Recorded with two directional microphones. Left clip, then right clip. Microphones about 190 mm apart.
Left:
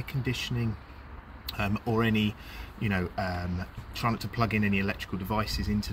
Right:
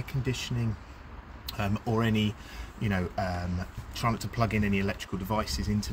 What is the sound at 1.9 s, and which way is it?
Speech, 30° right (ahead or behind).